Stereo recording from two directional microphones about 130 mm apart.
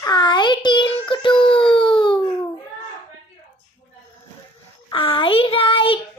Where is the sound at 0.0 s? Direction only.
35° left (ahead or behind).